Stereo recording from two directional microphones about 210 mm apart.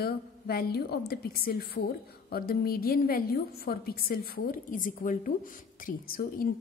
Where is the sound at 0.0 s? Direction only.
45° left (ahead or behind).